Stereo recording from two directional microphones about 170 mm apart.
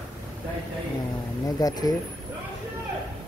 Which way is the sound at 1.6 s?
20° left (ahead or behind).